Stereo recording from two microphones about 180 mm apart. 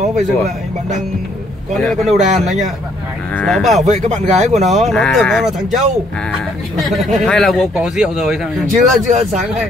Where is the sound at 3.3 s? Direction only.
Centre (ahead or behind).